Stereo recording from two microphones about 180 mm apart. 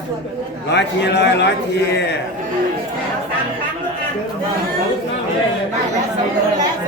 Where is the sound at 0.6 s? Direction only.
70° left (ahead or behind).